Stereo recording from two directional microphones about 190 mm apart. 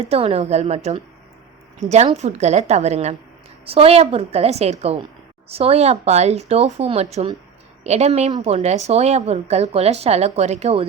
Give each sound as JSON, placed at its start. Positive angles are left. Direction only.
{"t": 0.1, "sound": "a woman's voice", "side_deg": -30}